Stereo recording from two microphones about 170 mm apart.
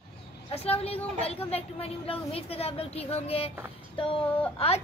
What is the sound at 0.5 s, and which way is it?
Speech, 35° left (ahead or behind).